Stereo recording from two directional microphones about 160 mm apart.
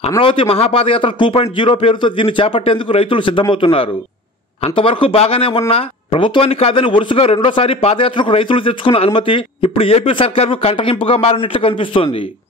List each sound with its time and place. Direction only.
0.2 s speech: 35° left (ahead or behind)